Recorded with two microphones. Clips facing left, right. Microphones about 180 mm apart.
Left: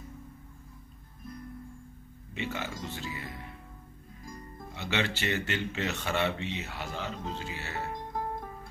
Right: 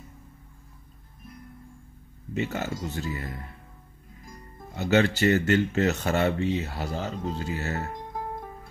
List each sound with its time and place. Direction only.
2.3 s speech: 40° right (ahead or behind)
4.7 s speech: 45° right (ahead or behind)